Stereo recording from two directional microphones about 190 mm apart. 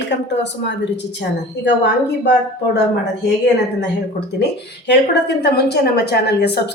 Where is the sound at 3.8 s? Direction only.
60° left (ahead or behind).